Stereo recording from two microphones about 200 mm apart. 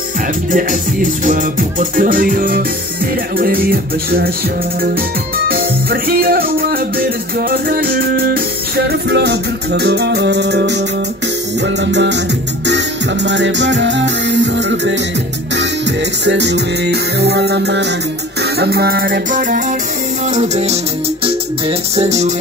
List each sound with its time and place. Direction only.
0.5 s music: 40° right (ahead or behind)
5.5 s music: 45° right (ahead or behind)
16.3 s music: 60° right (ahead or behind)
20.3 s music: 35° right (ahead or behind)